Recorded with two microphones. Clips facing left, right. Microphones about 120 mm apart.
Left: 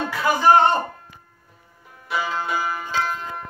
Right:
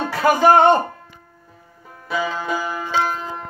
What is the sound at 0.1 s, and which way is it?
Music, 45° right (ahead or behind).